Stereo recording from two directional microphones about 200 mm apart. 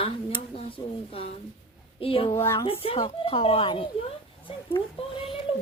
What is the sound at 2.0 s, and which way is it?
Speech, 30° left (ahead or behind).